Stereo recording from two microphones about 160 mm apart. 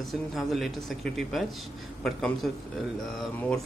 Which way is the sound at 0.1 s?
Centre (ahead or behind).